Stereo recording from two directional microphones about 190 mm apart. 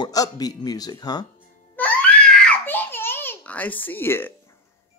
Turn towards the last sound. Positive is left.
turn(degrees=10)  # may be behind; listen again after turning